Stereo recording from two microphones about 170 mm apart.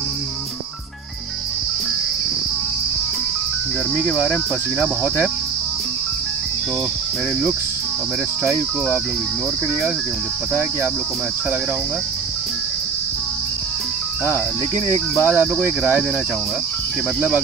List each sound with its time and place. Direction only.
3.9 s speech: centre (ahead or behind)
4.7 s cricket: 10° right (ahead or behind)
8.5 s cricket: 5° right (ahead or behind)
15.1 s speech: 5° right (ahead or behind)